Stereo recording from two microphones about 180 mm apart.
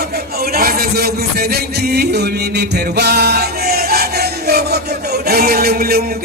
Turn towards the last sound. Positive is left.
turn(degrees=-60)  # may be behind; listen again after turning